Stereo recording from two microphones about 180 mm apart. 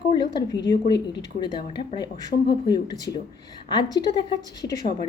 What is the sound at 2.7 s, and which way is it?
A woman's voice, 20° left (ahead or behind).